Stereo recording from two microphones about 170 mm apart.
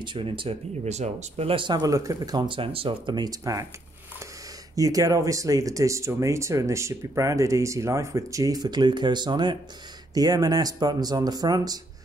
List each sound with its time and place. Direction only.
0.0 s speech: 30° right (ahead or behind)
4.7 s speech: 20° right (ahead or behind)